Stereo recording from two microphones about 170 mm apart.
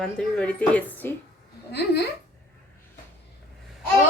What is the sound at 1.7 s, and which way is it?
Speech, 75° left (ahead or behind).